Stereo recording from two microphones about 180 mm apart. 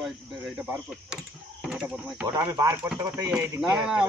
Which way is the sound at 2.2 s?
20° right (ahead or behind).